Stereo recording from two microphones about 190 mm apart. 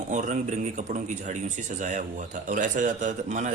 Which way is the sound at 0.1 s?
40° right (ahead or behind).